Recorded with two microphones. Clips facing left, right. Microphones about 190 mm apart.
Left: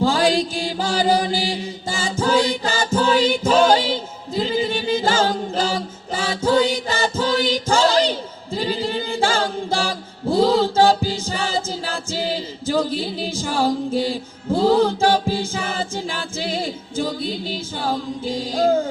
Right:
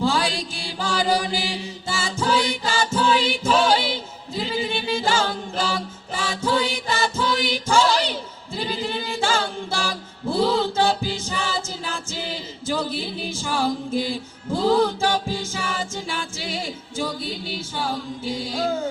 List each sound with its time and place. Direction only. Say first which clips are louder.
0.0 s mantra: left 5 dB; 40° left (ahead or behind)
0.8 s chant: left 3 dB; 35° left (ahead or behind)